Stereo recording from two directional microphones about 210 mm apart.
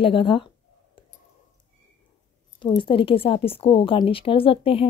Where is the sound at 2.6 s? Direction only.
25° left (ahead or behind).